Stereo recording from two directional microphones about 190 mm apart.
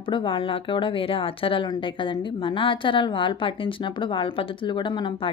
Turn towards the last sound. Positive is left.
turn(degrees=25)  # may be behind; listen again after turning